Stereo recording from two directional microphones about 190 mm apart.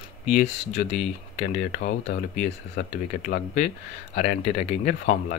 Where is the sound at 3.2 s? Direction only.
40° left (ahead or behind).